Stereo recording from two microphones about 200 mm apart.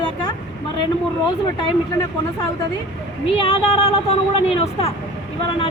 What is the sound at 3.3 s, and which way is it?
A woman's voice, 25° left (ahead or behind).